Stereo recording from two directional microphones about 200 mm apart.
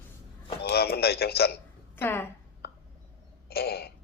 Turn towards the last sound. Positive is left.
turn(degrees=50)  # may be behind; listen again after turning